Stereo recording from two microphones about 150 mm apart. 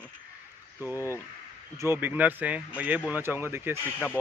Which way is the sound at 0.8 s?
15° right (ahead or behind).